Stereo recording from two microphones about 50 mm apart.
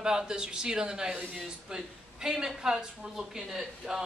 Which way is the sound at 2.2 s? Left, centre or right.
Centre.